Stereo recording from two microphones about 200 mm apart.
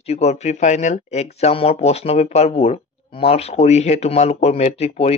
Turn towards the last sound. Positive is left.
turn(degrees=30)  # may be behind; listen again after turning